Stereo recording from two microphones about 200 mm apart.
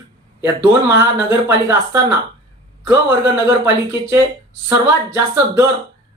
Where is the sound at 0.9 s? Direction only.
15° right (ahead or behind).